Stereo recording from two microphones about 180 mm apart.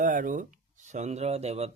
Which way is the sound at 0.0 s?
45° right (ahead or behind).